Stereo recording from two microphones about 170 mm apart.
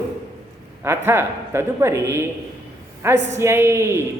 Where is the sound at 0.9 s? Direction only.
15° right (ahead or behind).